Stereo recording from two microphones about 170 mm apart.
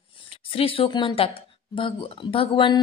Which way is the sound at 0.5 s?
35° left (ahead or behind).